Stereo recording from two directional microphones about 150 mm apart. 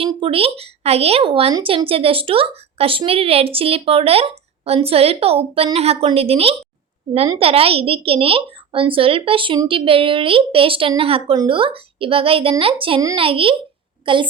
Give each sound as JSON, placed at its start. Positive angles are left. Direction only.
{"t": 0.0, "sound": "a woman's voice", "side_deg": -35}